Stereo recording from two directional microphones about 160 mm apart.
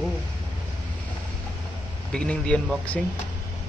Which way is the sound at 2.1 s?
5° left (ahead or behind).